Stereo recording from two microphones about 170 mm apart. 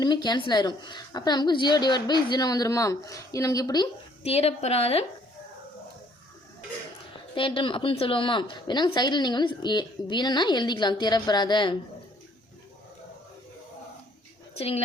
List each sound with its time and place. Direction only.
0.0 s a woman's voice: 25° left (ahead or behind)
4.2 s a woman's voice: 35° left (ahead or behind)
7.3 s a woman's voice: 30° left (ahead or behind)
14.5 s speech: 35° left (ahead or behind)